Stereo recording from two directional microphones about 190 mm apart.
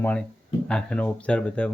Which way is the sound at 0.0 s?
5° left (ahead or behind).